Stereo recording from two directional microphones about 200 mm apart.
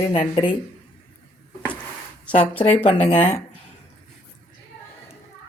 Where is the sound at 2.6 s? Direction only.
30° left (ahead or behind).